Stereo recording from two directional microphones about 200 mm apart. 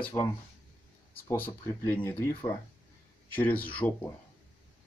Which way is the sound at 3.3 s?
10° left (ahead or behind).